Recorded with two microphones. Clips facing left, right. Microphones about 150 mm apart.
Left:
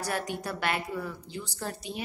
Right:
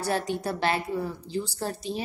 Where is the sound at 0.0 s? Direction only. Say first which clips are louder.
Right 5 dB; 30° right (ahead or behind).